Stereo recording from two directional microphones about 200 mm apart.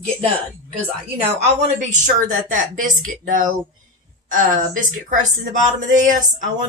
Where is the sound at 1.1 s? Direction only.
35° right (ahead or behind).